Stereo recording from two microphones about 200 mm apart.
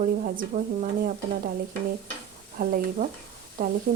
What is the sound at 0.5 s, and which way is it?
Speech, 40° right (ahead or behind).